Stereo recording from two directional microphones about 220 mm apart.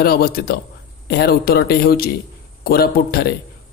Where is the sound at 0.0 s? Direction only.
45° left (ahead or behind).